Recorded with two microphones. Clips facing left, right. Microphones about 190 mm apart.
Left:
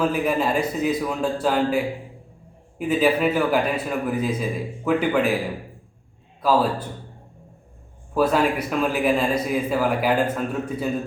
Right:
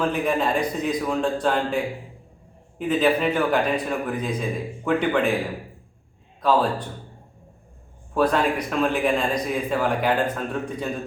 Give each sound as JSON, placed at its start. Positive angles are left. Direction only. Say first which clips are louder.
{"t": 0.0, "sound": "a man's voice", "louder": "left 1 dB", "side_deg": 5}
{"t": 6.4, "sound": "a man's voice", "louder": "left 1 dB", "side_deg": 5}
{"t": 8.1, "sound": "a man's voice", "louder": "left 1 dB", "side_deg": 5}